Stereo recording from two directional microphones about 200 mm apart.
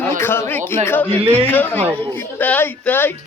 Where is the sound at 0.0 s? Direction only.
10° left (ahead or behind).